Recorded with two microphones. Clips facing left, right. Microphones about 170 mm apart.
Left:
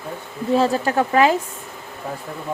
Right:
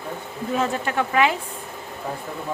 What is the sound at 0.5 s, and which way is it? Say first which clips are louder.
Speech: left 5 dB; 35° left (ahead or behind).